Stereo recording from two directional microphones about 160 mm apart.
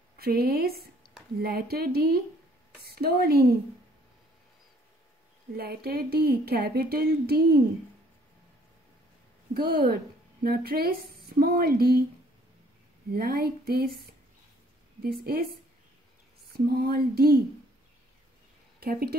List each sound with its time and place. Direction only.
0.2 s speech: 75° right (ahead or behind)
1.0 s a sound: 5° left (ahead or behind)
1.4 s speech: 75° right (ahead or behind)
5.6 s speech: 75° right (ahead or behind)
9.5 s speech: 70° right (ahead or behind)
13.1 s speech: 70° right (ahead or behind)
15.0 s a woman's voice: 75° right (ahead or behind)
16.5 s speech: 75° right (ahead or behind)
18.8 s speech: 75° right (ahead or behind)